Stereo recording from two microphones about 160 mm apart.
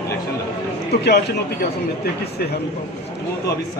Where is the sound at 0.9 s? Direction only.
90° left.